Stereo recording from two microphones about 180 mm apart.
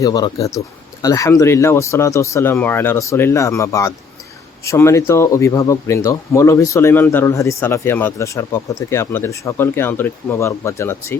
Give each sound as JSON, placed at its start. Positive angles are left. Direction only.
{"t": 0.0, "sound": "speech", "side_deg": 20}